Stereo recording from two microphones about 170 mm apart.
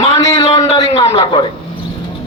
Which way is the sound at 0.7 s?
35° left (ahead or behind).